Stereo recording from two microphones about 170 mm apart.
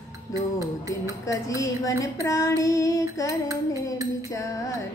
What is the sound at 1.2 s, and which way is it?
Female singing, 20° left (ahead or behind).